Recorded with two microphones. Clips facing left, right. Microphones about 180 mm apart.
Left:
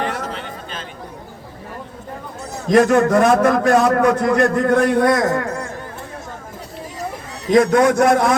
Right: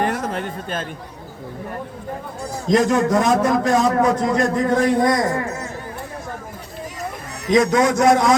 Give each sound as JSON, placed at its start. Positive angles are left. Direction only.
{"t": 0.0, "sound": "a sound", "side_deg": -50}
{"t": 2.6, "sound": "a man's voice", "side_deg": 60}
{"t": 7.5, "sound": "a man's voice", "side_deg": 55}